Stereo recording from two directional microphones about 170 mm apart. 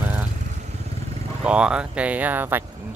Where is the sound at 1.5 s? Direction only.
5° right (ahead or behind).